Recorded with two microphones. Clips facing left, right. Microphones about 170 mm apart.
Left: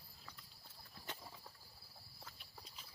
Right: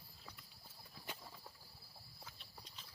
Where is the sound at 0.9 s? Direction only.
10° right (ahead or behind).